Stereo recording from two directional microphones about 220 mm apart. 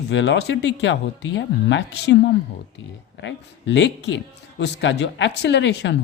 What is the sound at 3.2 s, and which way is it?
Speech, 55° left (ahead or behind).